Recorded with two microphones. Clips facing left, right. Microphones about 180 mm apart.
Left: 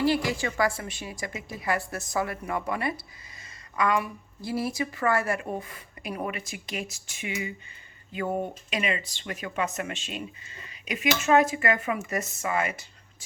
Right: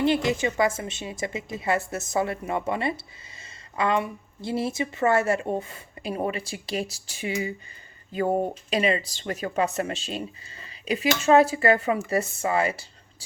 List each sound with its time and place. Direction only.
0.0 s a woman's voice: 20° right (ahead or behind)